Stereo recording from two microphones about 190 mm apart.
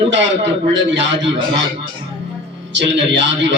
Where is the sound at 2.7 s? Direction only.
70° right (ahead or behind).